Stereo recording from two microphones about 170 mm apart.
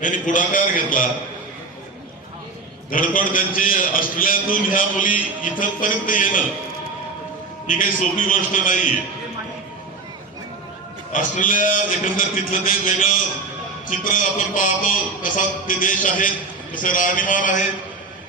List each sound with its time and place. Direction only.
0.0 s a man's voice: 50° left (ahead or behind)
2.9 s a man's voice: 55° left (ahead or behind)
8.3 s a man's voice: 50° left (ahead or behind)
11.1 s a man's voice: 50° left (ahead or behind)